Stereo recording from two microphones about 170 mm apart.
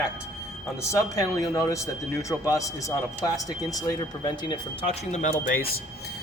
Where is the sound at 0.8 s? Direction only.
20° left (ahead or behind).